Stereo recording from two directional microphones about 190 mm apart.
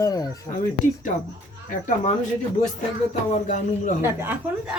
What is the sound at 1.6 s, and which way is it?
Speech, 45° left (ahead or behind).